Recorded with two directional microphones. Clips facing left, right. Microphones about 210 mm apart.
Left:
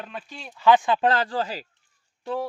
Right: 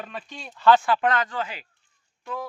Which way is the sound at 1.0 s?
30° left (ahead or behind).